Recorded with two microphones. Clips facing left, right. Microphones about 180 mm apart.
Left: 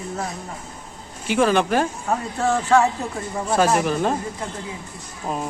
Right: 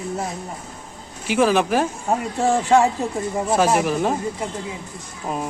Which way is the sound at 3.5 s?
Centre (ahead or behind).